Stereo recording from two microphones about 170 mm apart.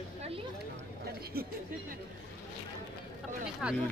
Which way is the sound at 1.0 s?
60° right (ahead or behind).